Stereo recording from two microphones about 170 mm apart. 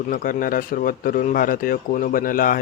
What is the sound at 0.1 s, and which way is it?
Speech, 55° left (ahead or behind).